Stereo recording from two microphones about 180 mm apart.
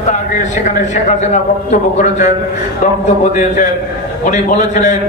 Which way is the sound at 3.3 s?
45° left (ahead or behind).